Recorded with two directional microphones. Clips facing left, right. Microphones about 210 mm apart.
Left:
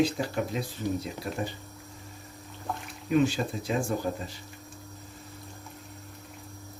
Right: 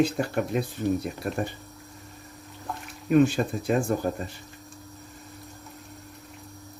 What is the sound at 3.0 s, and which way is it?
Speech, 55° right (ahead or behind).